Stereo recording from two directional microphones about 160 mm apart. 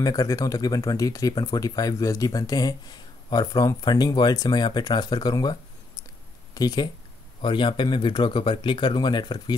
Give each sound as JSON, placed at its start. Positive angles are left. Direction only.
{"t": 0.0, "sound": "speech", "side_deg": 25}